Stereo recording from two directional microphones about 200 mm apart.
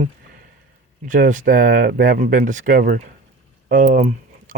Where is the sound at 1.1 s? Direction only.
40° right (ahead or behind).